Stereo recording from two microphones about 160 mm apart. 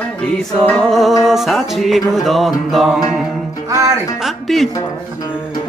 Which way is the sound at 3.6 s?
20° right (ahead or behind).